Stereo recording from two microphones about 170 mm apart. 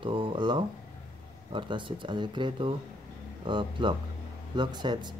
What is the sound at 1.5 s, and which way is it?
Speech, 30° right (ahead or behind).